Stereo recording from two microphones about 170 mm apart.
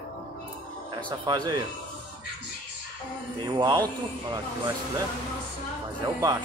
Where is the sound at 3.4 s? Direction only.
25° right (ahead or behind).